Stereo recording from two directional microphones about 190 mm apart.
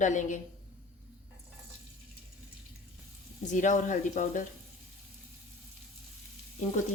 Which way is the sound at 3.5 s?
40° left (ahead or behind).